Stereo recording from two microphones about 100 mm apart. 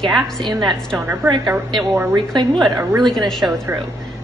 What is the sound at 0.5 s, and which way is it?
Speech, 45° right (ahead or behind).